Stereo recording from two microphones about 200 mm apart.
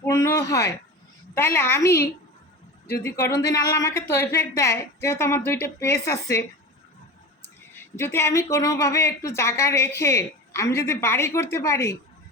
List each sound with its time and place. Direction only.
0.0 s a woman's voice: 15° left (ahead or behind)
7.9 s a woman's voice: 10° left (ahead or behind)